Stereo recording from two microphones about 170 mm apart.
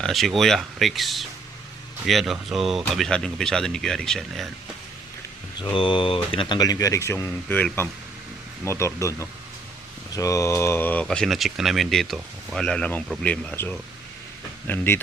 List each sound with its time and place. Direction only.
0.0 s speech: centre (ahead or behind)
5.5 s speech: 30° left (ahead or behind); by 15.0 s 10° left (ahead or behind)